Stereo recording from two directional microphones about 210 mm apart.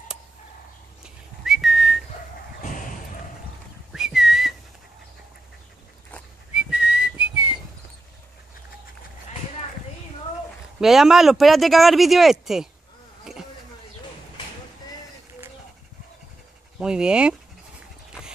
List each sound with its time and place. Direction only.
1.0 s whistling: centre (ahead or behind)
2.6 s slam: 40° left (ahead or behind)
3.9 s whistling: 5° right (ahead or behind)
6.5 s whistling: 5° right (ahead or behind)
10.8 s speech: centre (ahead or behind)
13.2 s a sound: centre (ahead or behind)
16.7 s speech: 5° right (ahead or behind)